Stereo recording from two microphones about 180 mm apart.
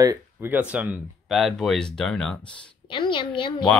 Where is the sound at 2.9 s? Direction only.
25° left (ahead or behind).